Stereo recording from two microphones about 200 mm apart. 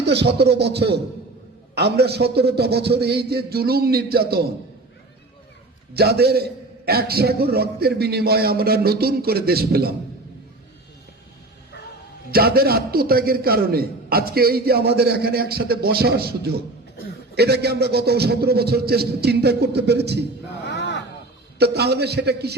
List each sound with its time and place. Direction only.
0.0 s music: 55° right (ahead or behind)
1.7 s a man's voice: 55° right (ahead or behind)
5.9 s a man's voice: 55° right (ahead or behind)
12.3 s a man's voice: 50° right (ahead or behind)
20.7 s a sound: 60° left (ahead or behind)
21.6 s music: 55° right (ahead or behind)